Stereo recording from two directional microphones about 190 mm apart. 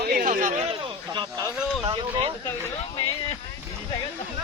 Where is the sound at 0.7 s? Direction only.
25° right (ahead or behind).